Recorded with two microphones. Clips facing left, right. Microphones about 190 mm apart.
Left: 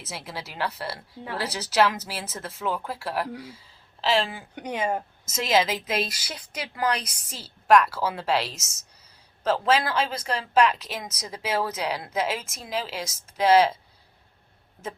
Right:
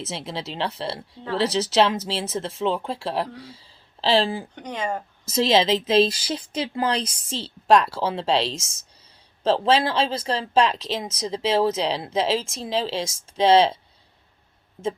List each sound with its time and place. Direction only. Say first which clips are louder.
0.0 s speech: right 6 dB; 25° right (ahead or behind)
4.5 s speech: left 1 dB; 10° left (ahead or behind)
5.2 s speech: right 5 dB; 30° right (ahead or behind)